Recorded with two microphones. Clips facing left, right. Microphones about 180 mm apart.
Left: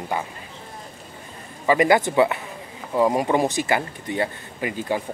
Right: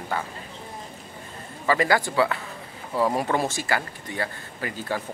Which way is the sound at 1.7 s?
20° left (ahead or behind).